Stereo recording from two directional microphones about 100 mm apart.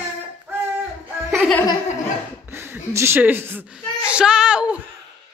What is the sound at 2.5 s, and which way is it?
Speech, 20° right (ahead or behind).